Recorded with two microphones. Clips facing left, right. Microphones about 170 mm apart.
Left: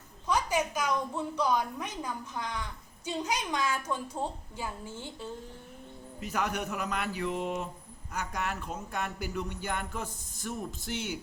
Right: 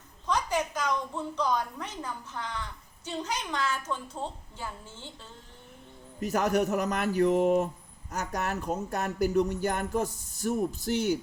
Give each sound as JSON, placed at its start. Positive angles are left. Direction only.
{"t": 0.3, "sound": "a woman's voice", "side_deg": 10}
{"t": 6.1, "sound": "speech", "side_deg": -40}